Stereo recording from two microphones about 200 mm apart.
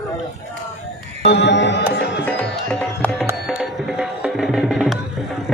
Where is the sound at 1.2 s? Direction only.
60° left (ahead or behind).